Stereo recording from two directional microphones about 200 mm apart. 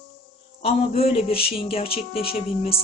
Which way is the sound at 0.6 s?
30° left (ahead or behind).